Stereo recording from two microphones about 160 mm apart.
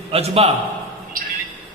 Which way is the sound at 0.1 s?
40° right (ahead or behind).